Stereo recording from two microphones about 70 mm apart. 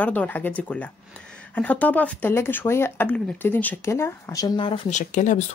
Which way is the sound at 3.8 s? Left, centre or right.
Left.